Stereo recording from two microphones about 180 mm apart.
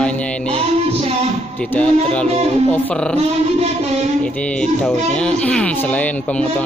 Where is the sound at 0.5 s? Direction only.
35° right (ahead or behind).